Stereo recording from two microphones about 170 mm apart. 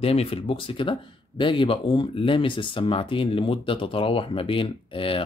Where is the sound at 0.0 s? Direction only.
35° left (ahead or behind).